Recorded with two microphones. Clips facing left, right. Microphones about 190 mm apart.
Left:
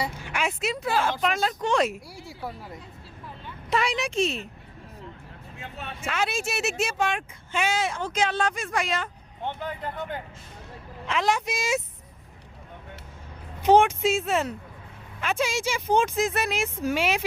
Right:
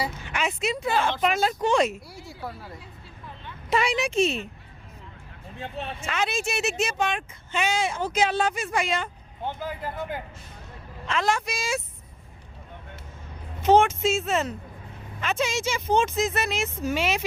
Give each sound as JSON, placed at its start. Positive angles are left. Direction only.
{"t": 0.1, "sound": "speech", "side_deg": 10}
{"t": 1.2, "sound": "speech", "side_deg": -10}
{"t": 1.9, "sound": "speech", "side_deg": 10}
{"t": 3.4, "sound": "speech", "side_deg": 0}
{"t": 5.5, "sound": "speech", "side_deg": -35}
{"t": 6.1, "sound": "speech", "side_deg": 5}
{"t": 11.0, "sound": "speech", "side_deg": 15}
{"t": 13.6, "sound": "speech", "side_deg": 15}